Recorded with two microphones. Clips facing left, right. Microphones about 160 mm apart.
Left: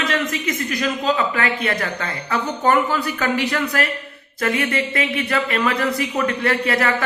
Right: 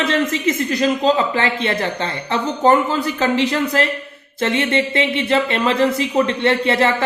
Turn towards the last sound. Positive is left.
turn(degrees=-25)  # may be behind; listen again after turning